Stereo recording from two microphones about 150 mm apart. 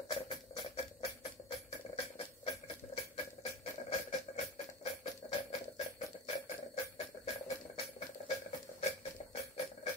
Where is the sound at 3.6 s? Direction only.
45° left (ahead or behind).